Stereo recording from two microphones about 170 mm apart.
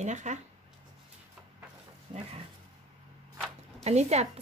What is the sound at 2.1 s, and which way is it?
Speech, 35° right (ahead or behind).